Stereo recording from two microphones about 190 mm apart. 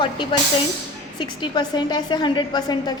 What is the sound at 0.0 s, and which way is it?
A woman's voice, 25° left (ahead or behind).